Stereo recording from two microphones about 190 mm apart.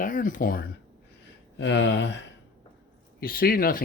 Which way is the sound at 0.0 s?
45° left (ahead or behind).